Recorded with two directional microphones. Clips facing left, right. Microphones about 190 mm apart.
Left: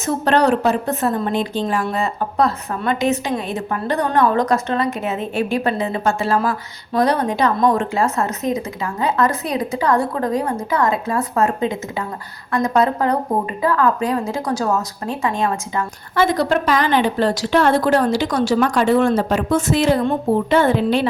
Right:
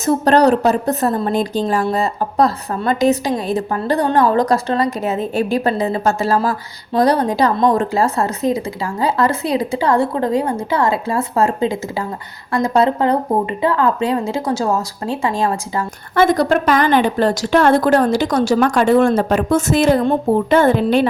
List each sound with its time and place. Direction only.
0.0 s a woman's voice: 35° right (ahead or behind)
16.1 s a woman's voice: 50° right (ahead or behind)